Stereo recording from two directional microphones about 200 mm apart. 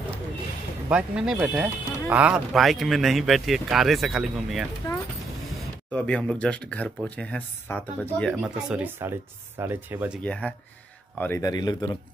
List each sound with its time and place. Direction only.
0.8 s speech: 5° right (ahead or behind)
5.9 s speech: 5° left (ahead or behind)
8.4 s speech: 5° right (ahead or behind)
10.2 s speech: 5° left (ahead or behind); by 12.0 s 20° left (ahead or behind)